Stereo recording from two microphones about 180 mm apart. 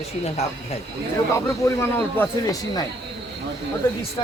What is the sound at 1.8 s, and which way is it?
Speech, 15° left (ahead or behind).